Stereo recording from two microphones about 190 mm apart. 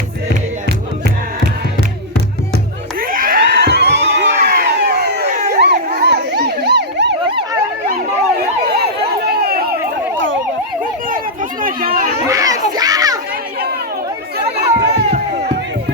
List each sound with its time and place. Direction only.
3.0 s screaming: 50° right (ahead or behind)
4.4 s a sound: 50° right (ahead or behind)
5.5 s emergency vehicle: 60° right (ahead or behind)
8.6 s emergency vehicle: 55° right (ahead or behind)
11.6 s chatter: 50° right (ahead or behind)
12.3 s children playing: 20° right (ahead or behind)
14.8 s a sound: 60° right (ahead or behind)